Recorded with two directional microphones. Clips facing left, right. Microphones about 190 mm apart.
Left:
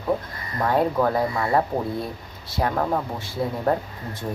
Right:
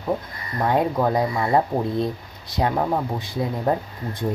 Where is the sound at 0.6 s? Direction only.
15° right (ahead or behind).